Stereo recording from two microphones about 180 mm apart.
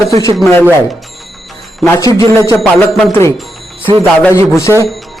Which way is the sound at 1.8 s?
15° left (ahead or behind).